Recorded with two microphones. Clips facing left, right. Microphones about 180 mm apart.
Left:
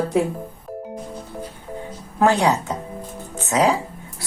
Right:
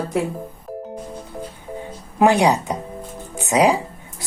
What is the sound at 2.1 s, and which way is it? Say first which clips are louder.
Speech: right 2 dB; 15° right (ahead or behind).